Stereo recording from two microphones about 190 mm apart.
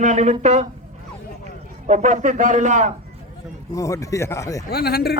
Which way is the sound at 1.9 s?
40° right (ahead or behind).